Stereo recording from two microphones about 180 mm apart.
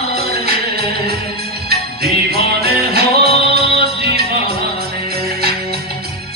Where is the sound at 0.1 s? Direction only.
60° right (ahead or behind).